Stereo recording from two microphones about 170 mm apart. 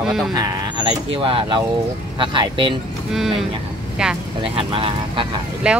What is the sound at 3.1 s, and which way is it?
Speech, centre (ahead or behind).